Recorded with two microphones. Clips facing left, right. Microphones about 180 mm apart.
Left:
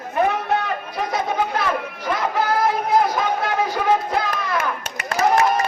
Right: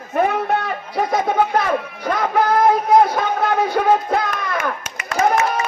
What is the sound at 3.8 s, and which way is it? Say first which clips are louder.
Music: right 5 dB; 55° right (ahead or behind).